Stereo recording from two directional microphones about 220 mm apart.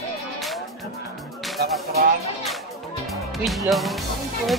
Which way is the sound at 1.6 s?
50° right (ahead or behind).